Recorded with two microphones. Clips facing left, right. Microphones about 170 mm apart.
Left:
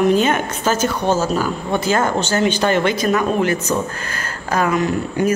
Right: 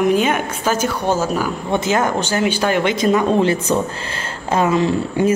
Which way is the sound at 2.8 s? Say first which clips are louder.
Right 2 dB; 20° right (ahead or behind).